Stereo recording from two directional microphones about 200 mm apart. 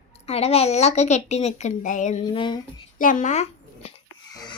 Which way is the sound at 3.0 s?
40° left (ahead or behind).